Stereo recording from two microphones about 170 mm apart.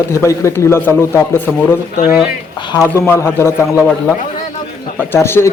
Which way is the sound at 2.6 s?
20° left (ahead or behind).